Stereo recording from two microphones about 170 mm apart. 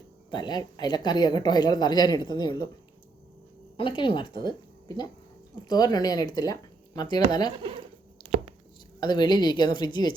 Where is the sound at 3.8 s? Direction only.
30° left (ahead or behind).